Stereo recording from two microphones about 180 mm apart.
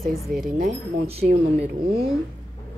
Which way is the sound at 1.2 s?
70° right (ahead or behind).